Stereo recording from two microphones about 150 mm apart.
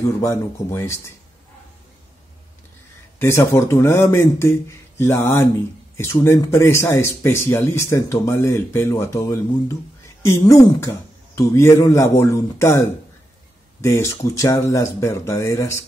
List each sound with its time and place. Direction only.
0.2 s speech: 15° left (ahead or behind)
3.2 s speech: 20° left (ahead or behind)